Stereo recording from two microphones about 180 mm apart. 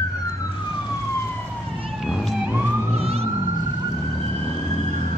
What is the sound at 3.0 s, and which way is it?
Emergency vehicle, 35° right (ahead or behind).